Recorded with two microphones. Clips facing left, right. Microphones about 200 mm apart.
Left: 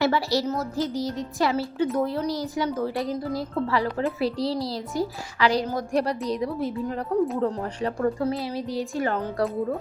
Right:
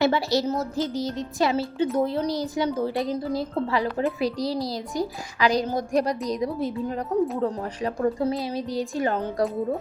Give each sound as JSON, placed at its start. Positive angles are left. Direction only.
{"t": 0.0, "sound": "a child's voice", "side_deg": -20}
{"t": 7.3, "sound": "speech", "side_deg": 0}
{"t": 7.6, "sound": "a child's voice", "side_deg": -15}